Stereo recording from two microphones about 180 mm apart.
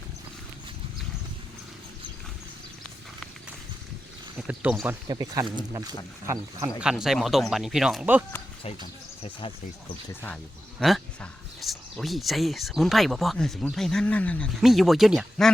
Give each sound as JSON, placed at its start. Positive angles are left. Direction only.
{"t": 4.4, "sound": "speech", "side_deg": -5}
{"t": 5.0, "sound": "speech", "side_deg": -20}
{"t": 6.7, "sound": "speech", "side_deg": -5}
{"t": 8.6, "sound": "speech", "side_deg": 30}
{"t": 10.8, "sound": "speech", "side_deg": 0}